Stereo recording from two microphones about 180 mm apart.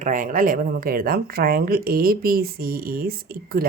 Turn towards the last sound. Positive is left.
turn(degrees=-55)  # may be behind; listen again after turning